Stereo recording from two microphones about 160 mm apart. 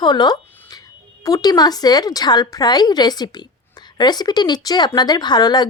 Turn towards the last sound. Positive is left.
turn(degrees=25)  # may be behind; listen again after turning